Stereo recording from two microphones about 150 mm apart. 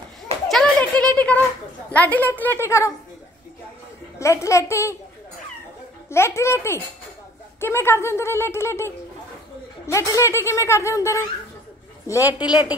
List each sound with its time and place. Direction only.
0.5 s children playing: centre (ahead or behind)
1.0 s a sound: 10° left (ahead or behind)
1.9 s speech: 10° left (ahead or behind)
4.2 s speech: 20° left (ahead or behind)
6.0 s speech: 15° left (ahead or behind)
12.4 s speech: 30° left (ahead or behind)